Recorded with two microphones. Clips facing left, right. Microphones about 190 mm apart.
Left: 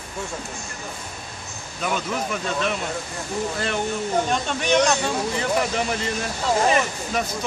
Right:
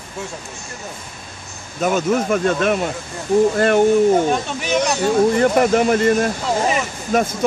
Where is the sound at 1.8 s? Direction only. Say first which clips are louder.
Right 9 dB; 45° right (ahead or behind).